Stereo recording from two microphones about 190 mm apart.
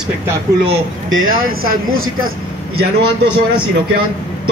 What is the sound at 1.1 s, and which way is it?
Speech, 90° right.